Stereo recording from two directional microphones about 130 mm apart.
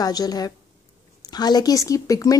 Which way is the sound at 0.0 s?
30° left (ahead or behind).